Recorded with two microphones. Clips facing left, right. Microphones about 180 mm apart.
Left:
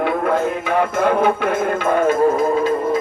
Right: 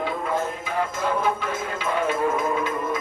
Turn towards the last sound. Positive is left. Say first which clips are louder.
# left 8 dB
turn(degrees=35)  # may be behind; listen again after turning